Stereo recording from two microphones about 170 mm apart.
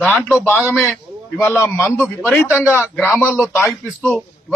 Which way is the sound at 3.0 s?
15° left (ahead or behind).